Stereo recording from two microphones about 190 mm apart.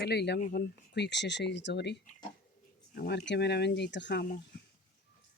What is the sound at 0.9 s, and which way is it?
Speech, 65° left (ahead or behind).